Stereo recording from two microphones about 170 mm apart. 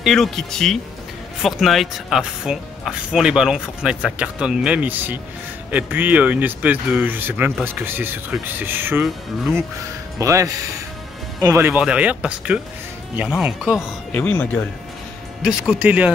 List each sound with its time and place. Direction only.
0.0 s speech: centre (ahead or behind)
10.1 s speech: 20° right (ahead or behind)
14.1 s speech: 10° left (ahead or behind)
15.4 s speech: 5° right (ahead or behind)